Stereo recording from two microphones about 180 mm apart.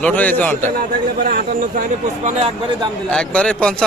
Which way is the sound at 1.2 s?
55° right (ahead or behind).